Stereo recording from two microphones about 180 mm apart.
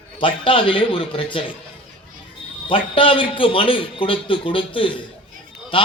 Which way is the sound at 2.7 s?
30° left (ahead or behind).